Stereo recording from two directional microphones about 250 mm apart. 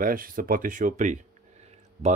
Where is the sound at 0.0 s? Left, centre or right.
Right.